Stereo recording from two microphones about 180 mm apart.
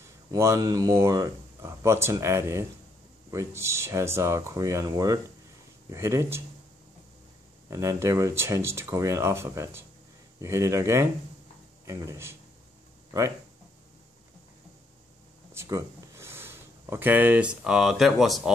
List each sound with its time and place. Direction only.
0.3 s speech: 15° right (ahead or behind)
7.7 s speech: 15° right (ahead or behind)
15.5 s speech: 15° right (ahead or behind)